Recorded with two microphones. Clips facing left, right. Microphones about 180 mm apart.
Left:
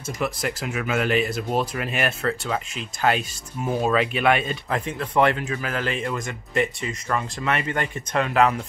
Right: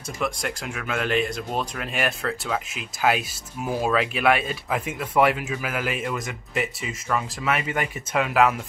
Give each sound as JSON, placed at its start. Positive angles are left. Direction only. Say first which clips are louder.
{"t": 0.2, "sound": "speech", "louder": "left 1 dB", "side_deg": 5}